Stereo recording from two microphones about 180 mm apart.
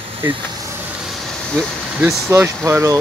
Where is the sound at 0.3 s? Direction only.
20° right (ahead or behind).